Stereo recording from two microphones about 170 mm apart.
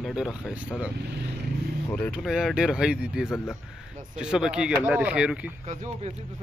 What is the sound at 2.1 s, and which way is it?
Speech, centre (ahead or behind).